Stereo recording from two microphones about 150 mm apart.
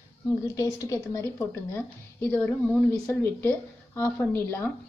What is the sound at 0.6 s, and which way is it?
A woman's voice, 20° left (ahead or behind).